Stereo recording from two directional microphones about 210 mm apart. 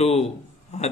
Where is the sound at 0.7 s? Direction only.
30° left (ahead or behind).